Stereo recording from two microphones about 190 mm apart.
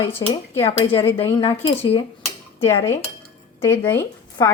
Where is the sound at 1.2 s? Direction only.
30° left (ahead or behind).